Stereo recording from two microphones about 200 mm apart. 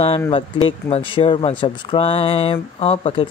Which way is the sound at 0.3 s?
25° left (ahead or behind).